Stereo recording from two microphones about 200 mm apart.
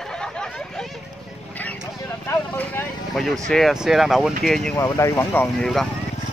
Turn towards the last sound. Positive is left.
turn(degrees=0)  # may be behind; listen again after turning